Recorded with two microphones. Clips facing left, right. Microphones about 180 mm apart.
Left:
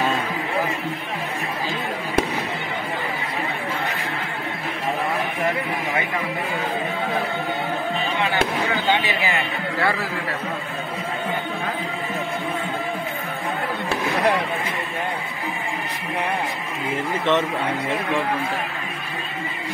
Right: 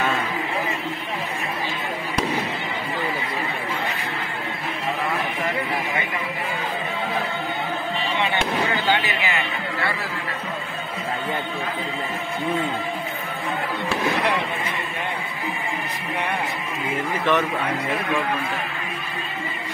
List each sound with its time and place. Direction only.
9.0 s a man's voice: 35° left (ahead or behind)
17.2 s speech: 25° left (ahead or behind)